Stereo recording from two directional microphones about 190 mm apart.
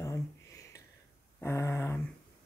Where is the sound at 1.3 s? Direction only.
15° left (ahead or behind).